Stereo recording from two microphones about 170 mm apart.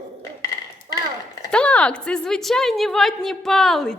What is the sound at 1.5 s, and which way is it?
A woman's voice, 5° left (ahead or behind).